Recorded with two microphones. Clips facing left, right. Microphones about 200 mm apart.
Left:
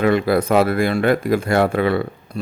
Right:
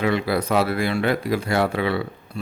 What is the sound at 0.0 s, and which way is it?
Speech, 50° left (ahead or behind).